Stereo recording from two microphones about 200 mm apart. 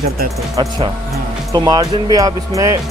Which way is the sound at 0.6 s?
20° right (ahead or behind).